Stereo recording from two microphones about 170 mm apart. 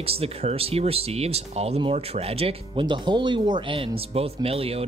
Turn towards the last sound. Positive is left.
turn(degrees=-35)  # may be behind; listen again after turning